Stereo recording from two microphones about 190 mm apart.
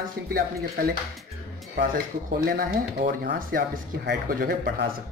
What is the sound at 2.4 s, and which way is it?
Speech, 50° right (ahead or behind).